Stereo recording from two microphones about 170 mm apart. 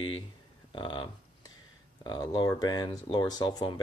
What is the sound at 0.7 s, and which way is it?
Speech, 30° left (ahead or behind).